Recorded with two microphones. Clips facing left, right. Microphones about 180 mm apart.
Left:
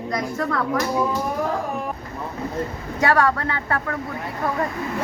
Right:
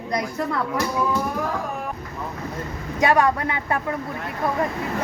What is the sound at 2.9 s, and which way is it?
Speech, 20° right (ahead or behind).